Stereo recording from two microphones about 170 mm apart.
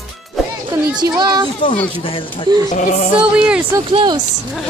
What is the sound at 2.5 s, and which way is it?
Speech, 25° right (ahead or behind).